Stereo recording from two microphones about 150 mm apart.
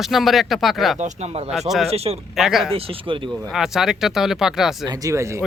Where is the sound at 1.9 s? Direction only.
45° right (ahead or behind).